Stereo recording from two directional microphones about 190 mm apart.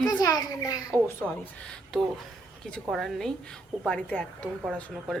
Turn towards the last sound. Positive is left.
turn(degrees=5)  # may be behind; listen again after turning